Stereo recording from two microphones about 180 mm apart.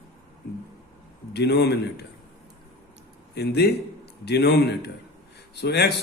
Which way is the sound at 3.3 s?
65° left (ahead or behind).